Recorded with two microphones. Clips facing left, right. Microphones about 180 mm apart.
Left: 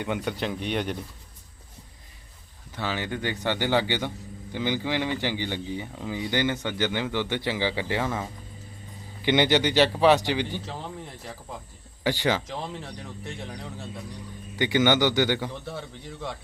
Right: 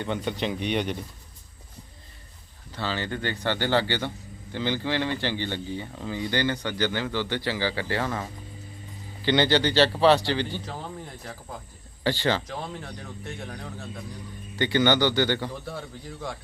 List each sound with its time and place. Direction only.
0.0 s speech: 10° left (ahead or behind)
2.7 s speech: 15° left (ahead or behind)
10.7 s speech: centre (ahead or behind)
12.0 s speech: 15° left (ahead or behind)
12.5 s speech: centre (ahead or behind)
14.6 s speech: 15° left (ahead or behind)
15.4 s speech: centre (ahead or behind)